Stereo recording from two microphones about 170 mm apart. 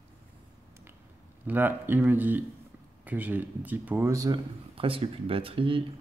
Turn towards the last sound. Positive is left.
turn(degrees=-30)  # may be behind; listen again after turning